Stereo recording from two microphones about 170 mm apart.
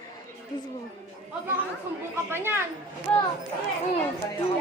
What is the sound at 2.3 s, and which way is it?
Speech, 15° right (ahead or behind).